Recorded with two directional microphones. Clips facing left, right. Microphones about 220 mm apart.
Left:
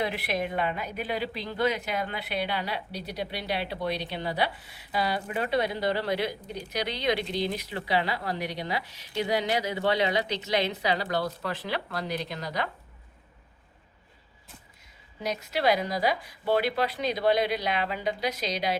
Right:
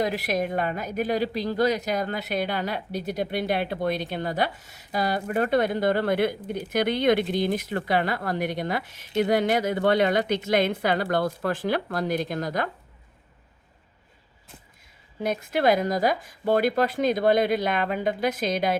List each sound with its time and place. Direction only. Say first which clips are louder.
0.0 s a woman's voice: right 4 dB; 45° right (ahead or behind)
15.2 s a woman's voice: right 4 dB; 50° right (ahead or behind)